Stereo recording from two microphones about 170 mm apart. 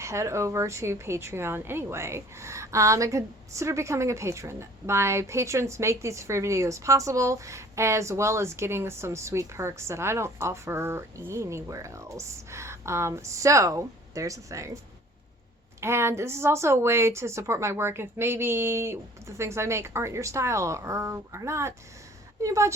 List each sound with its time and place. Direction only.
0.0 s a woman's voice: 15° right (ahead or behind)
15.8 s a woman's voice: 15° right (ahead or behind)